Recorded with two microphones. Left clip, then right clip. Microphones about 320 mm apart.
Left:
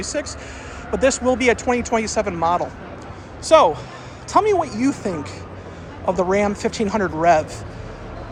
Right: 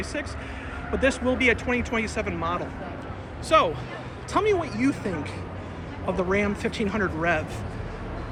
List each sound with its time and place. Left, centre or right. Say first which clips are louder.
0.0 s speech: left 6 dB; centre